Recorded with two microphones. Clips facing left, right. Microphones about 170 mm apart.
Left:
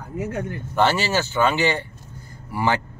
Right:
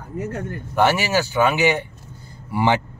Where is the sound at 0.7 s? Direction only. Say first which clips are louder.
Right 2 dB; 15° right (ahead or behind).